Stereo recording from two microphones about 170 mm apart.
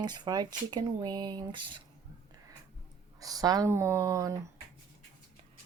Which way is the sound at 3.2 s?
20° right (ahead or behind).